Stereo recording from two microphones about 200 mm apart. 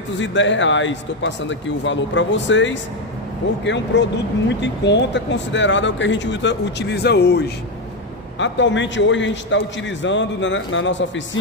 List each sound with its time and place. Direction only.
0.2 s a man's voice: 65° left (ahead or behind)
8.4 s a man's voice: 65° left (ahead or behind)